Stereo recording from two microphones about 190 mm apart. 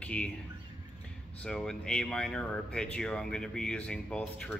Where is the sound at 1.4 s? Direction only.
5° left (ahead or behind).